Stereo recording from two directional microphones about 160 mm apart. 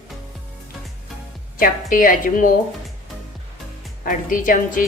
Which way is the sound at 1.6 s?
60° left (ahead or behind).